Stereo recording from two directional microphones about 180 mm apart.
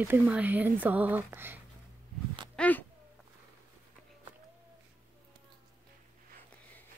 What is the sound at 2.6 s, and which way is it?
Speech, 10° left (ahead or behind).